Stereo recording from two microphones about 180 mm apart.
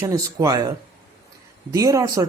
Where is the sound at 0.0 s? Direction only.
20° right (ahead or behind).